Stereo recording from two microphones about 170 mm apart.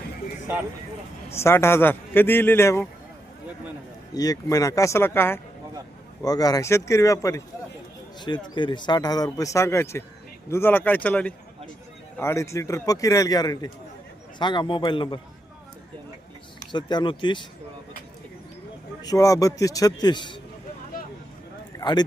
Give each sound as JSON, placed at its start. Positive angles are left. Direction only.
{"t": 1.3, "sound": "a man's voice", "side_deg": 15}
{"t": 4.1, "sound": "a man's voice", "side_deg": 20}
{"t": 16.7, "sound": "speech", "side_deg": 25}
{"t": 19.0, "sound": "speech", "side_deg": 20}
{"t": 21.8, "sound": "a sound", "side_deg": 25}